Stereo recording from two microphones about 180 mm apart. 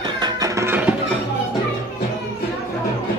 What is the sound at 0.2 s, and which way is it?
Music, 20° right (ahead or behind).